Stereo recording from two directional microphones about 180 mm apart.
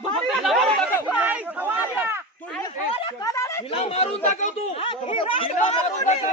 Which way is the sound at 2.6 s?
20° left (ahead or behind).